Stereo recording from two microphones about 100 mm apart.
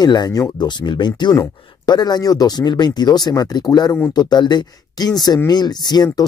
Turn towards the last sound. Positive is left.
turn(degrees=45)  # may be behind; listen again after turning